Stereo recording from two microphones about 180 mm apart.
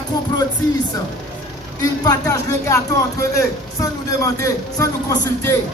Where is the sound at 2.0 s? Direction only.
20° left (ahead or behind).